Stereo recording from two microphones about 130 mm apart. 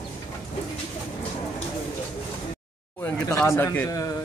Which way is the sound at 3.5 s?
20° left (ahead or behind).